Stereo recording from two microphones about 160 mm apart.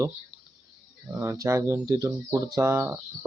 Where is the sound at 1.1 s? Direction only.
20° right (ahead or behind).